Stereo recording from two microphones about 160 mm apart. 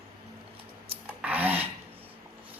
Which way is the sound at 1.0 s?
10° right (ahead or behind).